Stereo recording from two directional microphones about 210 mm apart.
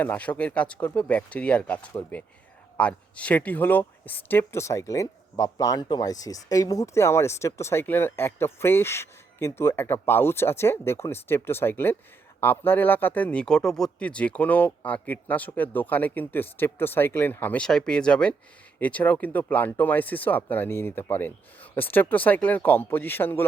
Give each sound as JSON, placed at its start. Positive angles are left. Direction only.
{"t": 0.0, "sound": "speech", "side_deg": 5}